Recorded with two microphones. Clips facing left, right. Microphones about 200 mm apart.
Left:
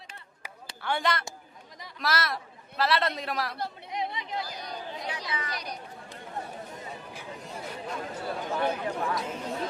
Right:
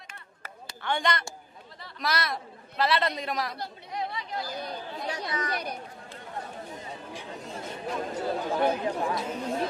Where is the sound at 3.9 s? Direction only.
20° left (ahead or behind).